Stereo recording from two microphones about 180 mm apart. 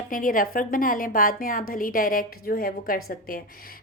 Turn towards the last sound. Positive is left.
turn(degrees=50)  # may be behind; listen again after turning